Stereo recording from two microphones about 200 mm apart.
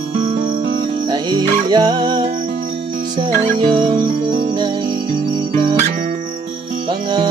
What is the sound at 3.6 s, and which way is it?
Music, 25° right (ahead or behind).